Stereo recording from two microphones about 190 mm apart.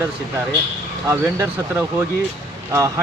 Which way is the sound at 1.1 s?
10° right (ahead or behind).